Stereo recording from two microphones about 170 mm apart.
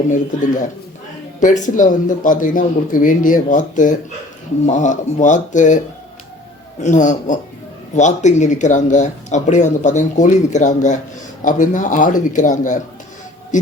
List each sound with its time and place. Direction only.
0.1 s speech: 50° left (ahead or behind)
6.8 s speech: 45° left (ahead or behind)